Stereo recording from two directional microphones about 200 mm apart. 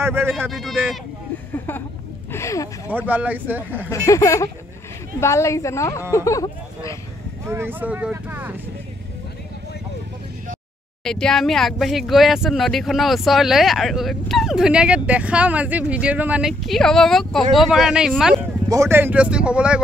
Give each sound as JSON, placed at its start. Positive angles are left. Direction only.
{"t": 0.0, "sound": "speech", "side_deg": -10}
{"t": 0.5, "sound": "speech", "side_deg": 0}
{"t": 2.3, "sound": "a sound", "side_deg": 15}
{"t": 2.9, "sound": "speech", "side_deg": -10}
{"t": 3.9, "sound": "a woman's voice", "side_deg": 15}
{"t": 7.4, "sound": "speech", "side_deg": -10}
{"t": 11.1, "sound": "speech", "side_deg": 5}